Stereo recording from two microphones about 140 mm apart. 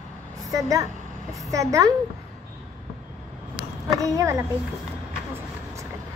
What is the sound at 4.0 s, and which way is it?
Speech, 25° right (ahead or behind).